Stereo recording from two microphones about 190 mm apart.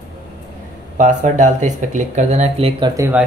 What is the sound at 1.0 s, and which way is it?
Speech, 40° right (ahead or behind).